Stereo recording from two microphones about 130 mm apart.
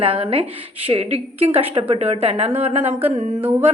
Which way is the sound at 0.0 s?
45° right (ahead or behind).